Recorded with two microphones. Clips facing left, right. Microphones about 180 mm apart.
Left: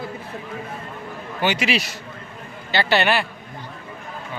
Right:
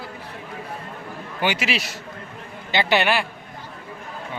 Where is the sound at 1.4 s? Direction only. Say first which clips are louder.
Left 2 dB; 5° right (ahead or behind).